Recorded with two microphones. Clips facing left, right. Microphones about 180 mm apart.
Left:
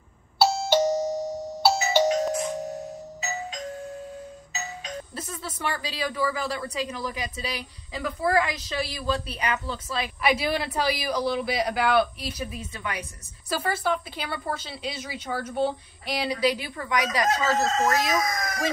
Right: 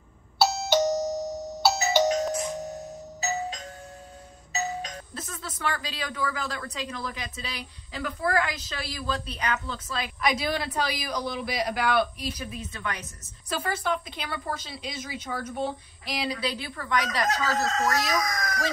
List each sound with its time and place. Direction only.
0.6 s doorbell: 10° left (ahead or behind)
5.1 s a woman's voice: 10° left (ahead or behind)
17.3 s speech: 25° left (ahead or behind)